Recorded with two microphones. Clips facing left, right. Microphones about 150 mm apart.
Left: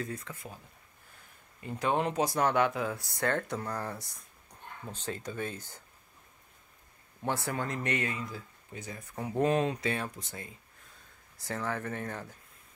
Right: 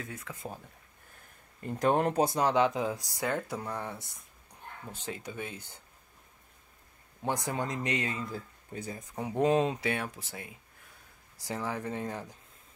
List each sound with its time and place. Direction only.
0.0 s speech: centre (ahead or behind)
1.8 s speech: 45° right (ahead or behind)
2.2 s speech: 20° right (ahead or behind); by 4.0 s centre (ahead or behind)
4.9 s speech: 15° right (ahead or behind)
7.2 s speech: 15° right (ahead or behind)
8.7 s speech: 30° right (ahead or behind)
9.0 s speech: 15° right (ahead or behind)
9.8 s speech: 10° right (ahead or behind)